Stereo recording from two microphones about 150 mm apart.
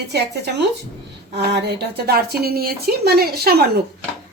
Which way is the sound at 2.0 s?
90° right.